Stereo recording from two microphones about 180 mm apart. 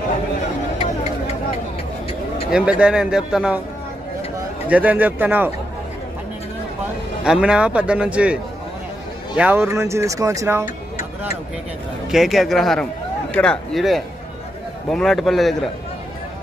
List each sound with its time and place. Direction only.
2.5 s a man's voice: 5° right (ahead or behind)
4.6 s speech: 10° right (ahead or behind)
7.2 s a man's voice: 5° right (ahead or behind)
9.4 s speech: 10° right (ahead or behind)
12.1 s a man's voice: centre (ahead or behind)